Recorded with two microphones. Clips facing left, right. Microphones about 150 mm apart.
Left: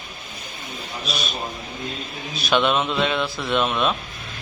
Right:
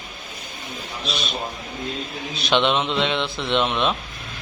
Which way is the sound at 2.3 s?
20° right (ahead or behind).